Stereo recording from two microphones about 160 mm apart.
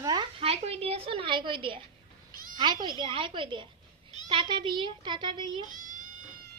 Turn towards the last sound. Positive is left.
turn(degrees=-55)  # may be behind; listen again after turning